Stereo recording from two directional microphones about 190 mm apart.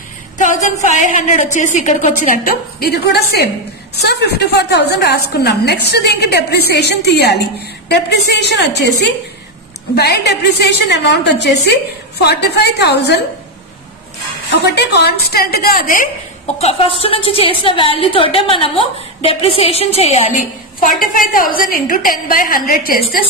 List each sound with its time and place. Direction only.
0.4 s a woman's voice: 40° left (ahead or behind); by 13.2 s 65° left (ahead or behind)
14.8 s a woman's voice: 60° left (ahead or behind)
16.5 s a woman's voice: 30° left (ahead or behind)
21.1 s a woman's voice: 45° left (ahead or behind)